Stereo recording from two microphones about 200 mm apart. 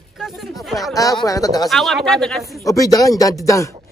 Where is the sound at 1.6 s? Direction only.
Centre (ahead or behind).